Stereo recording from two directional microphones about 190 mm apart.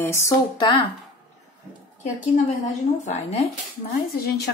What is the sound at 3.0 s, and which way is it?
Speech, 35° left (ahead or behind).